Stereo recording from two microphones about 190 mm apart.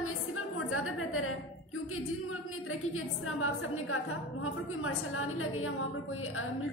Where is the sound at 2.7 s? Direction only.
90° left.